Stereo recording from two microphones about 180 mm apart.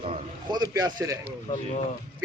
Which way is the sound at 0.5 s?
20° right (ahead or behind).